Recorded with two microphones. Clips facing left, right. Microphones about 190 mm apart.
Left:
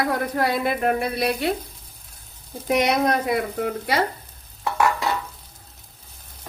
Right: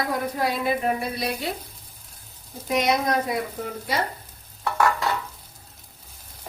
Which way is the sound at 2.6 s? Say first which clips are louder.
Left 3 dB; 65° left (ahead or behind).